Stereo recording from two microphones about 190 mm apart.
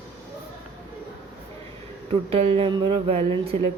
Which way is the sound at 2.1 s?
30° right (ahead or behind).